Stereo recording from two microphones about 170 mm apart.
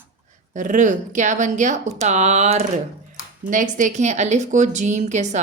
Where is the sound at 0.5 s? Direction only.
50° right (ahead or behind).